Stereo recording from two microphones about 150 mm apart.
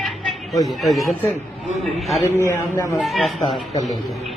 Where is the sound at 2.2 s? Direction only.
20° left (ahead or behind).